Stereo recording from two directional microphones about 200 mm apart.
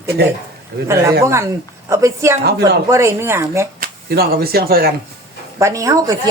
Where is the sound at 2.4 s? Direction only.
55° right (ahead or behind).